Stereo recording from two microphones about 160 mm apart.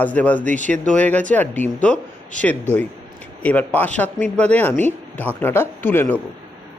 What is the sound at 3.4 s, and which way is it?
A woman's voice, 10° left (ahead or behind).